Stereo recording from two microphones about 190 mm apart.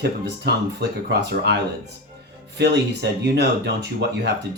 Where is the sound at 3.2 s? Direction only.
60° right (ahead or behind).